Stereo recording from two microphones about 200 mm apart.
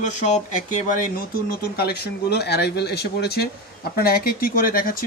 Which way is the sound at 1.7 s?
55° left (ahead or behind).